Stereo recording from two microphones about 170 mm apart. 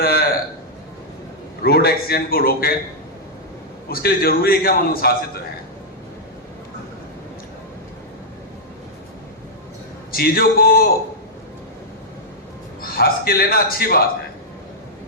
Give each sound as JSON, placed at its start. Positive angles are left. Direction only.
{"t": 0.0, "sound": "a sound", "side_deg": 60}
{"t": 1.6, "sound": "a man's voice", "side_deg": 65}
{"t": 3.8, "sound": "a man's voice", "side_deg": 60}
{"t": 10.1, "sound": "a man's voice", "side_deg": 60}
{"t": 12.8, "sound": "a man's voice", "side_deg": 60}